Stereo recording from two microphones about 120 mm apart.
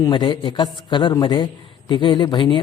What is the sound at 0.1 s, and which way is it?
A man's voice, 40° left (ahead or behind).